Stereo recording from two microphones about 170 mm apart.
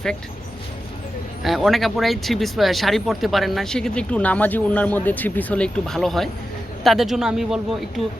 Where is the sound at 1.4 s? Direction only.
Centre (ahead or behind).